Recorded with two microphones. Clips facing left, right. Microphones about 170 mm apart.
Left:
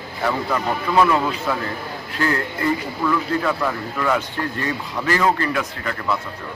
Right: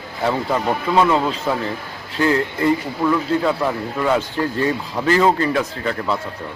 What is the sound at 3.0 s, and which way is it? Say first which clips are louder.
Speech: right 3 dB; 25° right (ahead or behind).